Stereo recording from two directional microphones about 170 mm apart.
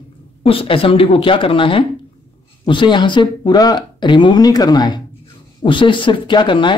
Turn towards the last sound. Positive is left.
turn(degrees=30)  # may be behind; listen again after turning